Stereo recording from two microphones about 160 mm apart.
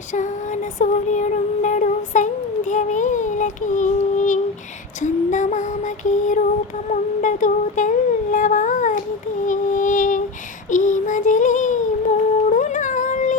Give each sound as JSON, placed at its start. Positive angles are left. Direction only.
{"t": 0.1, "sound": "music", "side_deg": 50}
{"t": 4.9, "sound": "female singing", "side_deg": 50}
{"t": 6.8, "sound": "humming", "side_deg": 50}
{"t": 9.5, "sound": "female singing", "side_deg": 55}
{"t": 10.7, "sound": "child singing", "side_deg": 50}
{"t": 12.5, "sound": "dog", "side_deg": 55}